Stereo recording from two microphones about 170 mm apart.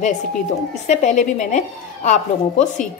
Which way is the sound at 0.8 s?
45° left (ahead or behind).